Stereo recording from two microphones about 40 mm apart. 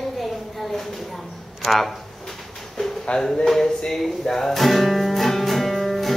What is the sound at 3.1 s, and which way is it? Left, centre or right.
Speech, left.